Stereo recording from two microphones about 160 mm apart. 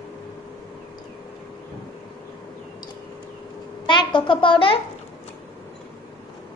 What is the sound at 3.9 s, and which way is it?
Speech, 30° left (ahead or behind).